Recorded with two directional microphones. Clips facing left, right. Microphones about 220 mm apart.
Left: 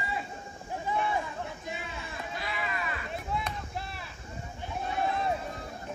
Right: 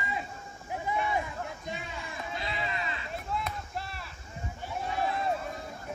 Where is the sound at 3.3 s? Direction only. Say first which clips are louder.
Even; centre (ahead or behind).